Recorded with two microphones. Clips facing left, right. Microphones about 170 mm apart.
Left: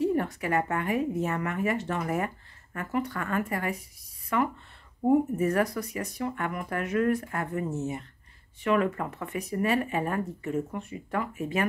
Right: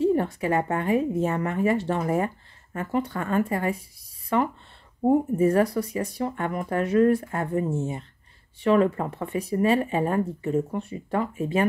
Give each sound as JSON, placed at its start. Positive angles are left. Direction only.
{"t": 0.0, "sound": "a woman's voice", "side_deg": -25}